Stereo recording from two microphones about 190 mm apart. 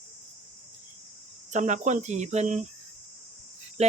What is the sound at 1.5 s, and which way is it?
Speech, 40° right (ahead or behind).